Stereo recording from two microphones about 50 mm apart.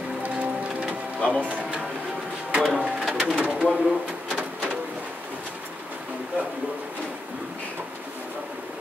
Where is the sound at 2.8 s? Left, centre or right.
Right.